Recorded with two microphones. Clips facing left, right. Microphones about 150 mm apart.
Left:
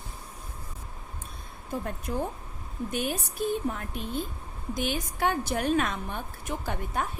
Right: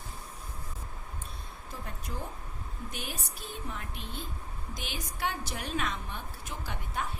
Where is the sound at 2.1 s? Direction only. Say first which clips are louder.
Left 10 dB; 50° left (ahead or behind).